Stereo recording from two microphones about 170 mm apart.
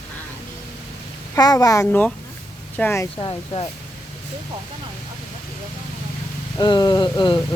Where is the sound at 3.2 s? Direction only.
30° left (ahead or behind).